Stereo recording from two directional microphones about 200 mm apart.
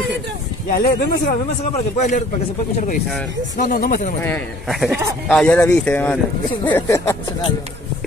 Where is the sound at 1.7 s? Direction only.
35° left (ahead or behind).